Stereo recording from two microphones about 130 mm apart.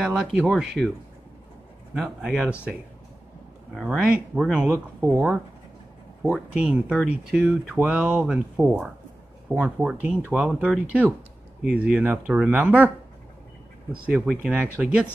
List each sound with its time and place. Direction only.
0.0 s speech: 5° right (ahead or behind)
2.0 s speech: 5° right (ahead or behind)
3.7 s speech: 5° left (ahead or behind)
4.5 s speech: 10° right (ahead or behind)
4.7 s speech: 20° right (ahead or behind)
6.3 s speech: 5° right (ahead or behind)
14.1 s speech: 5° right (ahead or behind)